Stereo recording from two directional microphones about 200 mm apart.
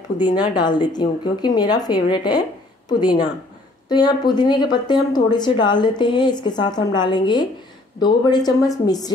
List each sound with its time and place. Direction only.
0.2 s speech: 20° left (ahead or behind)